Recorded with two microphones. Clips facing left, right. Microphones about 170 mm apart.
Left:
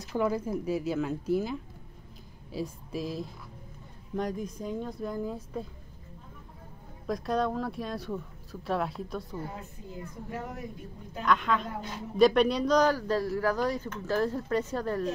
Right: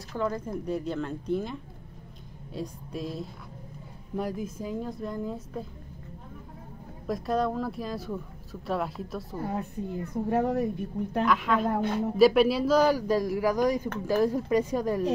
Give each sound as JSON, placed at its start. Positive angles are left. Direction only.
{"t": 0.1, "sound": "speech", "side_deg": 5}
{"t": 7.1, "sound": "speech", "side_deg": 0}
{"t": 9.5, "sound": "a woman's voice", "side_deg": -65}
{"t": 11.2, "sound": "speech", "side_deg": -5}
{"t": 11.7, "sound": "a woman's voice", "side_deg": -60}
{"t": 12.2, "sound": "a man's voice", "side_deg": -5}